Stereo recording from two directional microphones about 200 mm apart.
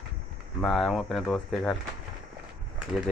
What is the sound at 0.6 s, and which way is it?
Speech, centre (ahead or behind).